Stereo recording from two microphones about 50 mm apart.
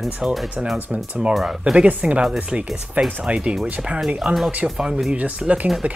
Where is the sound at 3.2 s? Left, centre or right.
Right.